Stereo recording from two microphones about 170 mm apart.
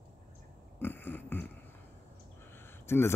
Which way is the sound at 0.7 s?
10° left (ahead or behind).